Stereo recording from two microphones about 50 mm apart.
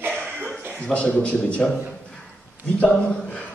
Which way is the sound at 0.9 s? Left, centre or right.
Left.